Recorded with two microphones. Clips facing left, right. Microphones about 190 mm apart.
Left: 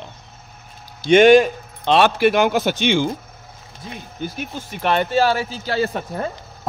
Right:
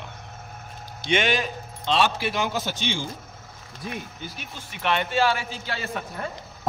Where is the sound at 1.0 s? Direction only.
45° left (ahead or behind); by 3.1 s 70° left (ahead or behind).